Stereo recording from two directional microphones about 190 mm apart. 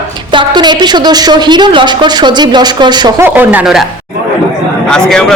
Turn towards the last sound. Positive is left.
turn(degrees=5)  # may be behind; listen again after turning